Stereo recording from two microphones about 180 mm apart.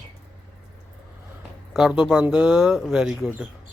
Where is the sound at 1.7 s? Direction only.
5° right (ahead or behind).